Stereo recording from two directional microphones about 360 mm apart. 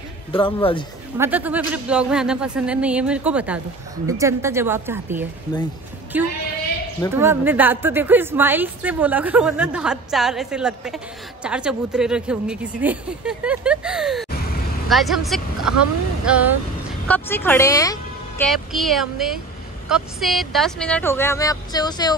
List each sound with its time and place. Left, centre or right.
0.3 s speech: centre
1.1 s a woman's voice: centre